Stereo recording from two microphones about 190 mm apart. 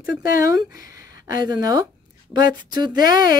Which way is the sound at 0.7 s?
20° right (ahead or behind).